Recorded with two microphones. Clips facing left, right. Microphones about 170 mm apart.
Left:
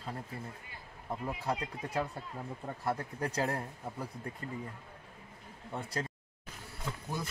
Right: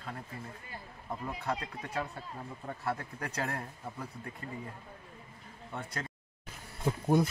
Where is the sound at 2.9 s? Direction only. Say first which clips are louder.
Left 3 dB; 30° left (ahead or behind).